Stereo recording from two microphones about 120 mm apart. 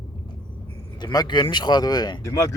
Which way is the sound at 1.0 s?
35° left (ahead or behind).